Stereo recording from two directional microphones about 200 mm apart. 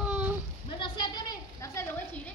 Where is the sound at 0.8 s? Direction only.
20° left (ahead or behind).